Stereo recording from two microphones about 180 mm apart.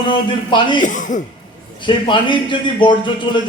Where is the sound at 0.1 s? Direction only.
25° left (ahead or behind).